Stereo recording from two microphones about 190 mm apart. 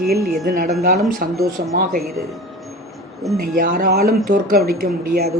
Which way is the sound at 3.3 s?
45° right (ahead or behind).